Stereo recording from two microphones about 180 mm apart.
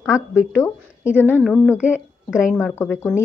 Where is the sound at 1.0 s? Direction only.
10° right (ahead or behind).